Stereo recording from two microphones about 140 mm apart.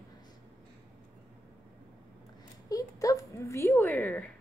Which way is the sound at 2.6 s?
25° left (ahead or behind).